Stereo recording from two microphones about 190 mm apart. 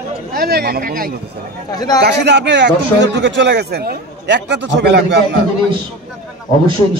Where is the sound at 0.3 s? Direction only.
50° right (ahead or behind).